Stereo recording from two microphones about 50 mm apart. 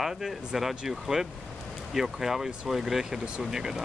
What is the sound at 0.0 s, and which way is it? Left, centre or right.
Speech, centre.